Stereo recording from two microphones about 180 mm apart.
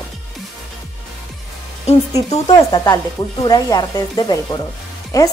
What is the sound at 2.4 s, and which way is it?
Speech, 20° left (ahead or behind).